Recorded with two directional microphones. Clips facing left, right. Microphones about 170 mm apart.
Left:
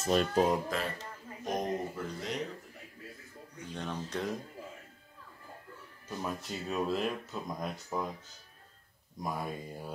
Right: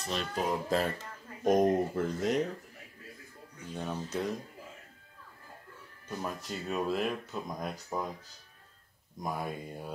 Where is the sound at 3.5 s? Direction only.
10° right (ahead or behind).